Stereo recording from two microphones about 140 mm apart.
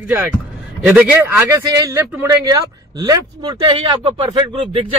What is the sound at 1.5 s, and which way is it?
Speech, 25° right (ahead or behind).